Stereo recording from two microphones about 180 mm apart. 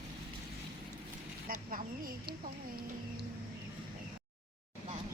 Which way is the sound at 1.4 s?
50° right (ahead or behind).